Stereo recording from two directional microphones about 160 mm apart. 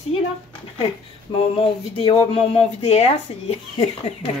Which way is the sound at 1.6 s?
35° left (ahead or behind).